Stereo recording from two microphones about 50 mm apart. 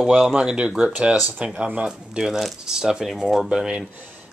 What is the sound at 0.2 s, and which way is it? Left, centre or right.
Speech, centre.